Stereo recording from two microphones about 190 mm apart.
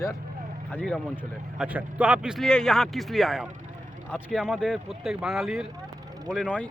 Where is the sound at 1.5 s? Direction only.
5° right (ahead or behind).